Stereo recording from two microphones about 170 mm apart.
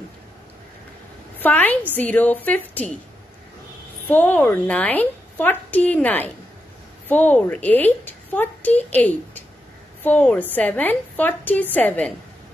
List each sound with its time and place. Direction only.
1.4 s a woman's voice: 10° left (ahead or behind)
4.1 s a woman's voice: 10° left (ahead or behind)